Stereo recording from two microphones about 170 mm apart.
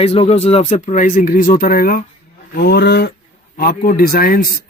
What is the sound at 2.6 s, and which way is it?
Speech, 70° left (ahead or behind).